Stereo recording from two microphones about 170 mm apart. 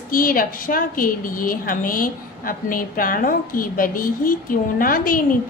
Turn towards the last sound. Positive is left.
turn(degrees=55)  # may be behind; listen again after turning